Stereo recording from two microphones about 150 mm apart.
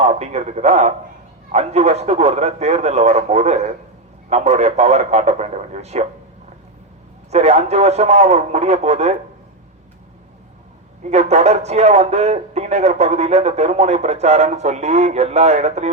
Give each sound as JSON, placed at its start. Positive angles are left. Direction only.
{"t": 0.0, "sound": "speech", "side_deg": -45}
{"t": 7.3, "sound": "speech", "side_deg": -45}
{"t": 11.0, "sound": "speech", "side_deg": -45}